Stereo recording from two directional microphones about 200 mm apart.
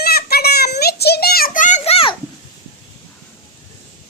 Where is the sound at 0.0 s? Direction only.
50° left (ahead or behind); by 2.1 s 30° left (ahead or behind).